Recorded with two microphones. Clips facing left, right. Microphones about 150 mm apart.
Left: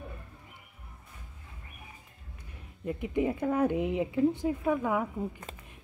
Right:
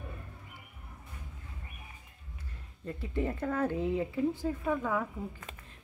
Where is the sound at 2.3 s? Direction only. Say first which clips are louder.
Even; 15° left (ahead or behind).